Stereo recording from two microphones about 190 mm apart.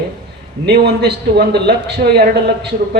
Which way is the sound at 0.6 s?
60° right (ahead or behind).